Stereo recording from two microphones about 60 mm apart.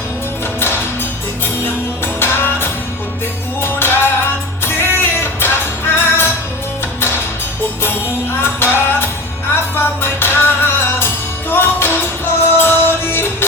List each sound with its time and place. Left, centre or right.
0.6 s music: left
2.1 s music: left
8.4 s music: left